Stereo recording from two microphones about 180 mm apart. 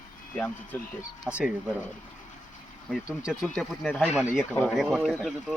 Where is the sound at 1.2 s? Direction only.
5° right (ahead or behind).